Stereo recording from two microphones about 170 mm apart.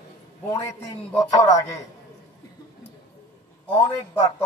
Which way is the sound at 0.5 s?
20° left (ahead or behind).